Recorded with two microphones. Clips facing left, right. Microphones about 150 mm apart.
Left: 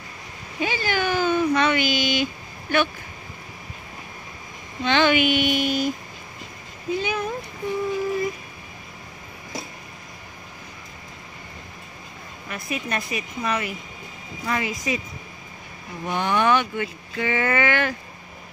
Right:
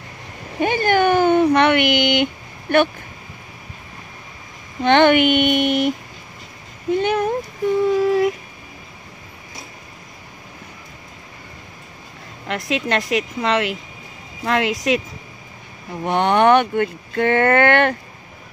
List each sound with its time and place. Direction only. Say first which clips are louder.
0.6 s a sound: right 8 dB; 55° right (ahead or behind)
4.8 s speech: right 6 dB; 60° right (ahead or behind)
7.9 s child singing: right 8 dB; 80° right
12.4 s a woman's voice: right 7 dB; 85° right
16.1 s speech: right 7 dB; 65° right (ahead or behind)